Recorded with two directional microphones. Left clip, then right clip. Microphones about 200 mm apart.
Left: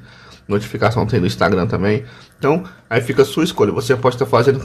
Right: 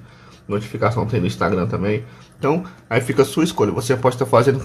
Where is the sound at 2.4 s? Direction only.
5° left (ahead or behind).